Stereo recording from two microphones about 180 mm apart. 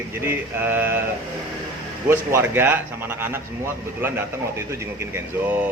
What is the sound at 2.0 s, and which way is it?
Speech, 15° right (ahead or behind).